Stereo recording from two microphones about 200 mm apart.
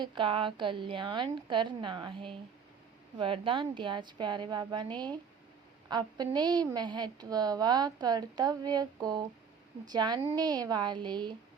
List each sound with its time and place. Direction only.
0.0 s a woman's voice: 25° right (ahead or behind)